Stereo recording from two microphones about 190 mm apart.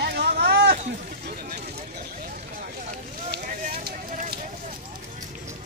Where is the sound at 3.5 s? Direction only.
50° right (ahead or behind).